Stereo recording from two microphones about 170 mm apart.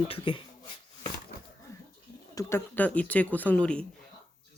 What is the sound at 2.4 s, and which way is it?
Speech, 15° left (ahead or behind).